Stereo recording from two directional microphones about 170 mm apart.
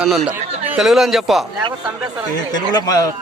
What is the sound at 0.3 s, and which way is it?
Speech, 5° right (ahead or behind).